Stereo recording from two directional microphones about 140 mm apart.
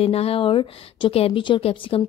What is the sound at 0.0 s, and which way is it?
A woman's voice, 45° left (ahead or behind).